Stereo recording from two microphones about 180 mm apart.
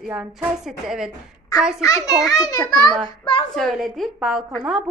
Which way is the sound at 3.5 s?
Centre (ahead or behind).